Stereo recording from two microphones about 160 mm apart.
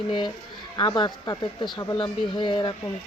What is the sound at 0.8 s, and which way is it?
Speech, 25° left (ahead or behind).